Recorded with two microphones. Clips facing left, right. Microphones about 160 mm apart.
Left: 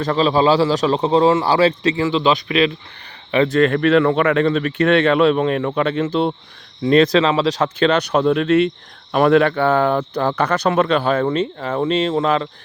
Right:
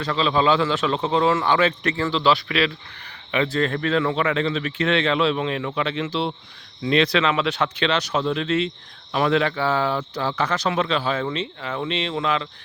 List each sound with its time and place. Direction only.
0.0 s a man's voice: 45° left (ahead or behind); by 2.7 s 20° left (ahead or behind)
3.5 s a man's voice: 70° left (ahead or behind); by 12.5 s 40° left (ahead or behind)